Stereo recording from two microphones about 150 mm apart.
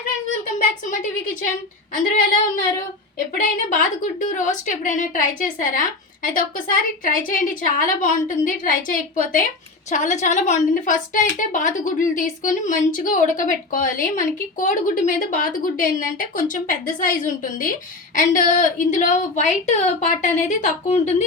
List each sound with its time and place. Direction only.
0.9 s a woman's voice: 55° left (ahead or behind)
3.3 s a woman's voice: 60° left (ahead or behind)
9.9 s a woman's voice: 55° left (ahead or behind)